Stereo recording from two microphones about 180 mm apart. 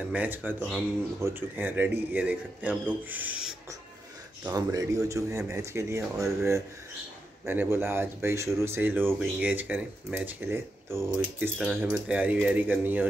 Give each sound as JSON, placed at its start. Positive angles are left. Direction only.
{"t": 0.1, "sound": "speech", "side_deg": -10}
{"t": 4.5, "sound": "speech", "side_deg": -20}